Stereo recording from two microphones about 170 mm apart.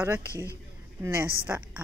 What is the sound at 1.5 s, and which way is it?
Speech, 15° right (ahead or behind).